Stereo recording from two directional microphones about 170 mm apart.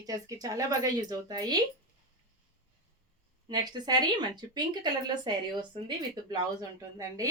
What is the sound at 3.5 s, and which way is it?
Speech, 25° right (ahead or behind).